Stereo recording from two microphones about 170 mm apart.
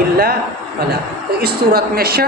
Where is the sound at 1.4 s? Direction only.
65° right (ahead or behind).